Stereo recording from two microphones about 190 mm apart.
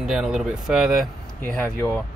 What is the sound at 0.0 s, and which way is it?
Speech, 5° right (ahead or behind).